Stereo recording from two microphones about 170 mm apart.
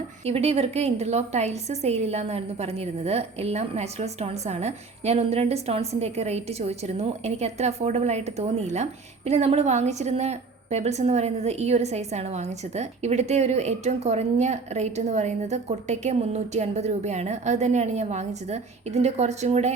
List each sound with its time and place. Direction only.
0.3 s a woman's voice: 35° right (ahead or behind)